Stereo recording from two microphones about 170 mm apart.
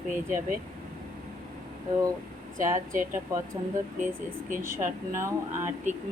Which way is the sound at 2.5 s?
50° right (ahead or behind).